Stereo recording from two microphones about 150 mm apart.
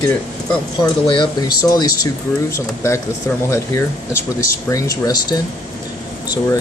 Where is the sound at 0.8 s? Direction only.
30° left (ahead or behind).